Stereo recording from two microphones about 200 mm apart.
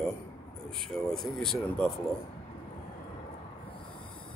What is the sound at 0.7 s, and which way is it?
Speech, centre (ahead or behind).